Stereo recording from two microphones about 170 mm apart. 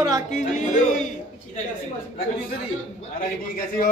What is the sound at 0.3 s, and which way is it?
Speech, 45° left (ahead or behind).